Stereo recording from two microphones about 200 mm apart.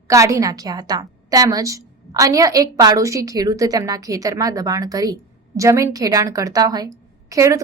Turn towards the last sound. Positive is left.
turn(degrees=-15)  # may be behind; listen again after turning